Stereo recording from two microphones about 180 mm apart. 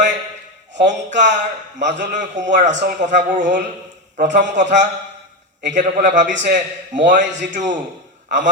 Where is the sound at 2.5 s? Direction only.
45° right (ahead or behind).